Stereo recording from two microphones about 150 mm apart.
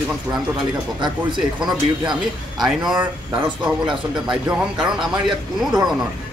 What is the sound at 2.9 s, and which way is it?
Speech, 10° right (ahead or behind).